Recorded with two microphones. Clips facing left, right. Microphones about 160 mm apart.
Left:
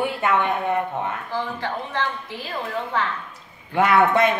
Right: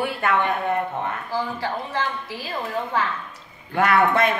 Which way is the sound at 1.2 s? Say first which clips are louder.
Right 1 dB; 5° right (ahead or behind).